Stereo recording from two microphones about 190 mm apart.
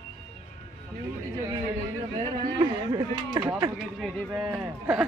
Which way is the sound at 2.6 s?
25° right (ahead or behind).